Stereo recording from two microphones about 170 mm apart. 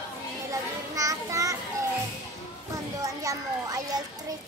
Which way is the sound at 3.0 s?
20° right (ahead or behind).